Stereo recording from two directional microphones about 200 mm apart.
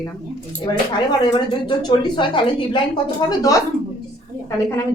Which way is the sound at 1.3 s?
20° left (ahead or behind).